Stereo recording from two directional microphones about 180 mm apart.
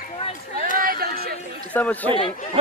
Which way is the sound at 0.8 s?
55° right (ahead or behind).